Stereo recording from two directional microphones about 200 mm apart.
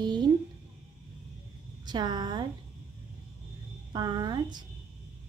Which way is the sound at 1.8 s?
20° right (ahead or behind).